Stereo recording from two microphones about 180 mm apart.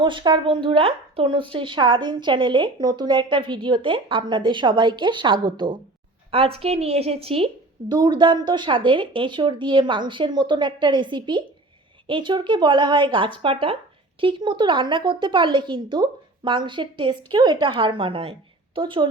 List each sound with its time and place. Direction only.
0.0 s a woman's voice: 25° right (ahead or behind)